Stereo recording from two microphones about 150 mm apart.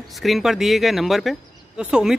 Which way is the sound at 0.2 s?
Centre (ahead or behind).